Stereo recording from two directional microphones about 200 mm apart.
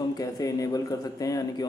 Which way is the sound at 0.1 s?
20° left (ahead or behind).